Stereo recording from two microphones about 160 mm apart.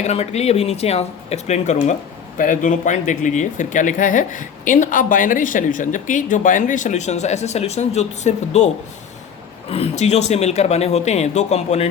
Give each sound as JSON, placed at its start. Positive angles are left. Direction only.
{"t": 0.0, "sound": "speech", "side_deg": 40}